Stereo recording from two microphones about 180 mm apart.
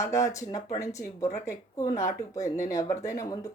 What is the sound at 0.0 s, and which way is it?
Speech, 15° left (ahead or behind).